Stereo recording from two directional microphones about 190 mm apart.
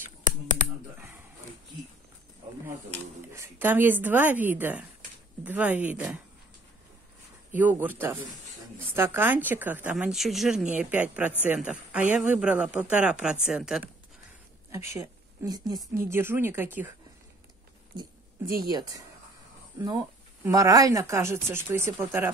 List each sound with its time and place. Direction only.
2.6 s speech: 15° right (ahead or behind)
7.5 s speech: 10° right (ahead or behind)
14.7 s speech: 15° right (ahead or behind)
18.7 s speech: 20° right (ahead or behind)